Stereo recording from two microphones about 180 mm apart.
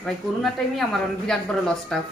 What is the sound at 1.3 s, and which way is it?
Speech, 5° left (ahead or behind).